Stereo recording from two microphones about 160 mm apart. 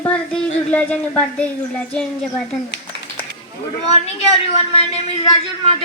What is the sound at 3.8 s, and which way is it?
Speech, 40° left (ahead or behind).